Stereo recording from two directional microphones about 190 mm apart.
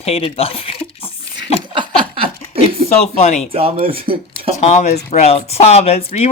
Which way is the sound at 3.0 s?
35° left (ahead or behind).